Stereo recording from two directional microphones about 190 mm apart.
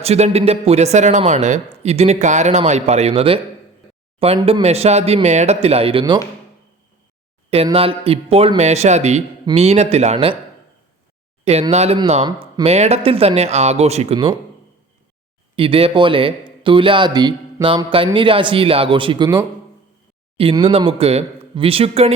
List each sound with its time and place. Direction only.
0.0 s speech: 35° right (ahead or behind)
4.6 s speech: 35° right (ahead or behind)
7.5 s speech: 30° right (ahead or behind)
11.7 s speech: 35° right (ahead or behind)
15.5 s speech: 30° right (ahead or behind)